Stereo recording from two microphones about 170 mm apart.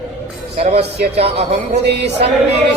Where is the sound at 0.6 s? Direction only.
35° right (ahead or behind).